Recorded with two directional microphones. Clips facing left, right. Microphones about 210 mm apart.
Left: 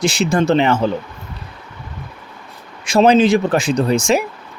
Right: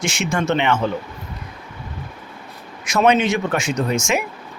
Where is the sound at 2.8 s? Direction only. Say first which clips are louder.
Left 5 dB; 30° left (ahead or behind).